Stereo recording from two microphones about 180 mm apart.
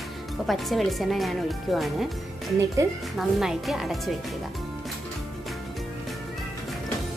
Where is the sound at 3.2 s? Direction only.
Centre (ahead or behind).